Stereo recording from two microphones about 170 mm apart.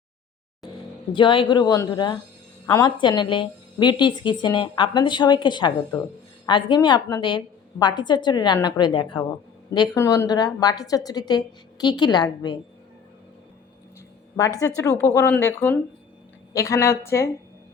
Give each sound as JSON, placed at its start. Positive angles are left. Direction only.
{"t": 0.8, "sound": "a woman's voice", "side_deg": 30}
{"t": 14.8, "sound": "speech", "side_deg": 15}